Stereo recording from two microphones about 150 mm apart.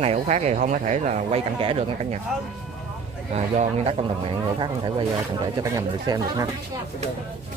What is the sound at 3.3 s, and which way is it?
Speech, 50° right (ahead or behind).